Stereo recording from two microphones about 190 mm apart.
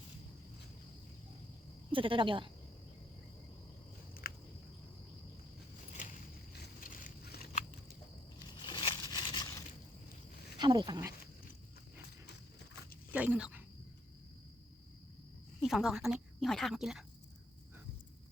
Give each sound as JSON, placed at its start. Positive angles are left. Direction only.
{"t": 1.9, "sound": "a woman's voice", "side_deg": -25}
{"t": 4.2, "sound": "a sound", "side_deg": 50}
{"t": 6.7, "sound": "biting", "side_deg": 50}
{"t": 8.6, "sound": "a sound", "side_deg": 25}
{"t": 10.6, "sound": "speech", "side_deg": -25}
{"t": 13.1, "sound": "speech", "side_deg": -5}
{"t": 15.6, "sound": "speech", "side_deg": 0}